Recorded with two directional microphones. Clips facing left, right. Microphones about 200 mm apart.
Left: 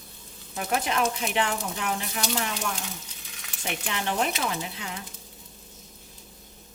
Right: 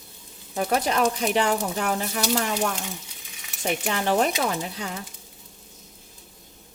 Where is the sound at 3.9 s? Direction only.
40° right (ahead or behind).